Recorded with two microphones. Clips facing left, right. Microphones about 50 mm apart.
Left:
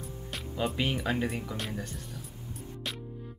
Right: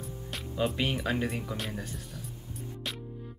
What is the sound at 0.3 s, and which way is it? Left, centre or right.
Speech, centre.